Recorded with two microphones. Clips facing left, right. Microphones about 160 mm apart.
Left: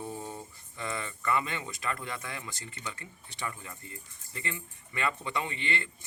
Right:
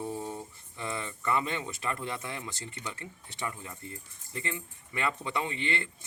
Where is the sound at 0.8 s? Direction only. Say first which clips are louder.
Even; 20° right (ahead or behind).